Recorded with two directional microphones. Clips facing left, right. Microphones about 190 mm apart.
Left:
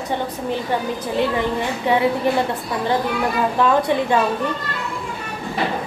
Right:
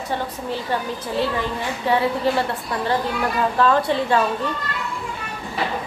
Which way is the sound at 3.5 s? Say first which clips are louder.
Left 1 dB; 15° left (ahead or behind).